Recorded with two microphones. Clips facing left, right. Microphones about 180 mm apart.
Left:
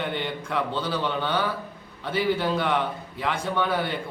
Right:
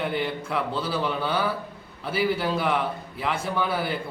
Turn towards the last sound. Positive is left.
turn(degrees=-5)  # may be behind; listen again after turning